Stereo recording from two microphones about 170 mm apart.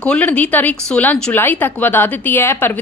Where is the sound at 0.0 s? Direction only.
5° left (ahead or behind).